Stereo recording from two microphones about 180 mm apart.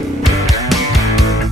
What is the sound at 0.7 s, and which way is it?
Music, centre (ahead or behind).